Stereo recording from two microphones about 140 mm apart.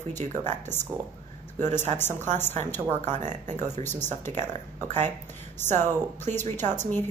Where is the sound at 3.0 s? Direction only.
60° right (ahead or behind).